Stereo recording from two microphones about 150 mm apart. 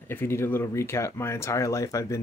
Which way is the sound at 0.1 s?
15° left (ahead or behind).